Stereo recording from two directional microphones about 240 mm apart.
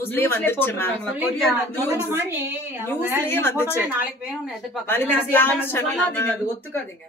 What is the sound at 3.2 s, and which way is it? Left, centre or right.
Speech, centre.